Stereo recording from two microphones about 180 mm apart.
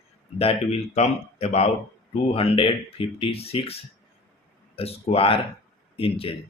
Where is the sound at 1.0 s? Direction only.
35° left (ahead or behind).